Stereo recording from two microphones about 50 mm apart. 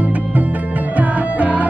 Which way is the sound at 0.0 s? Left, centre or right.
Right.